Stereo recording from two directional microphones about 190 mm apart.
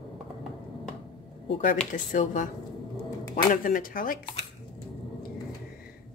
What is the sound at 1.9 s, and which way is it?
Speech, 45° left (ahead or behind).